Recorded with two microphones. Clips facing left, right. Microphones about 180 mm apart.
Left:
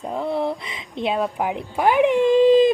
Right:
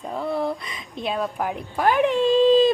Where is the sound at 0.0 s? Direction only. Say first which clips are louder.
Left 2 dB; 20° left (ahead or behind).